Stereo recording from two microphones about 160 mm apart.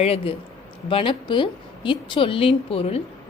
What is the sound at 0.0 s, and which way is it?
A woman's voice, 40° left (ahead or behind).